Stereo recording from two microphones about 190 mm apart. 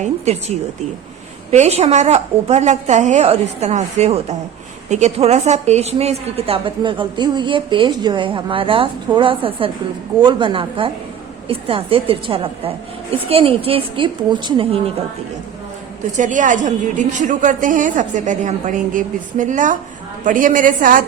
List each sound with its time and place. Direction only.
0.0 s a woman's voice: 35° right (ahead or behind)
16.1 s a woman's voice: 40° right (ahead or behind)